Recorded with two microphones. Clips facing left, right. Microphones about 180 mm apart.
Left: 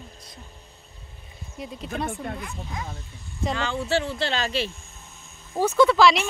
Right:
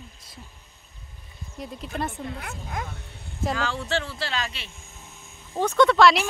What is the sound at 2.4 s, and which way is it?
Speech, 60° right (ahead or behind).